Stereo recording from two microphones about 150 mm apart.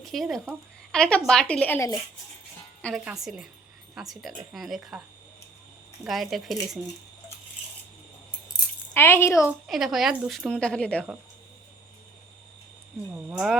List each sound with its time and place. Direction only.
0.0 s a woman's voice: centre (ahead or behind)
3.0 s a woman's voice: 5° right (ahead or behind)
6.1 s a woman's voice: centre (ahead or behind)
8.9 s speech: 15° left (ahead or behind)
9.6 s a woman's voice: centre (ahead or behind)
13.1 s a woman's voice: 5° right (ahead or behind)